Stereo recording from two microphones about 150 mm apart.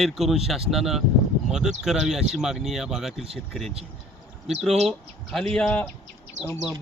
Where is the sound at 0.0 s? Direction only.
Centre (ahead or behind).